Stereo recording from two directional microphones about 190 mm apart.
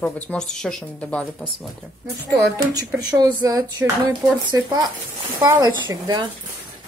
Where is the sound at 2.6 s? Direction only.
20° right (ahead or behind).